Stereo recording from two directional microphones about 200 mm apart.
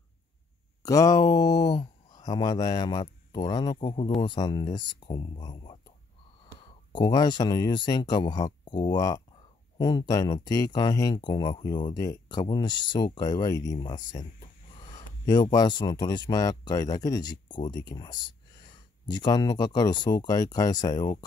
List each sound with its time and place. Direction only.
0.8 s speech: 15° left (ahead or behind)